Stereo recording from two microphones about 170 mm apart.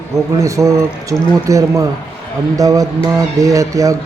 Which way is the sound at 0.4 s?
20° right (ahead or behind).